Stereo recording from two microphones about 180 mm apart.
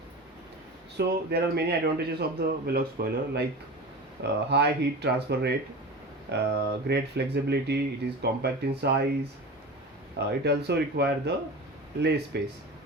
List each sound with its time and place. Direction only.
0.9 s speech: 65° right (ahead or behind)
10.2 s speech: 65° right (ahead or behind)